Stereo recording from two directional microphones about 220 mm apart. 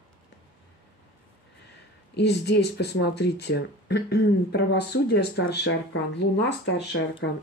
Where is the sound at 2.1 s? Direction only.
50° left (ahead or behind).